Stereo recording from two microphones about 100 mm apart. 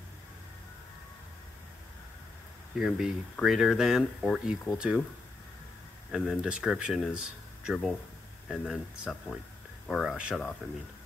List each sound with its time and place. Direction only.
2.8 s speech: 5° right (ahead or behind)
6.1 s speech: 5° right (ahead or behind)